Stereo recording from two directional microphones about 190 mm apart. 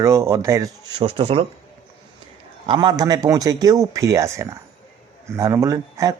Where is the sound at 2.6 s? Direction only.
25° right (ahead or behind).